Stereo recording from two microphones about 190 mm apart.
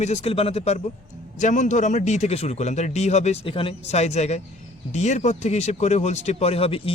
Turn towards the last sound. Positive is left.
turn(degrees=30)  # may be behind; listen again after turning